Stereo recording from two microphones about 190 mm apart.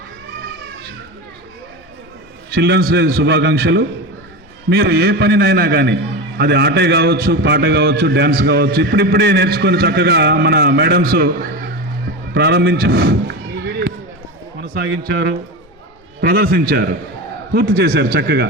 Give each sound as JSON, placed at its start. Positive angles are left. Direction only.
{"t": 2.5, "sound": "a man's voice", "side_deg": -55}
{"t": 12.3, "sound": "a sound", "side_deg": -60}
{"t": 14.6, "sound": "a man's voice", "side_deg": -50}